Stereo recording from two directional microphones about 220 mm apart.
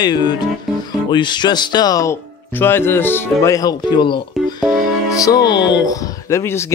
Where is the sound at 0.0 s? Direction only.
20° left (ahead or behind).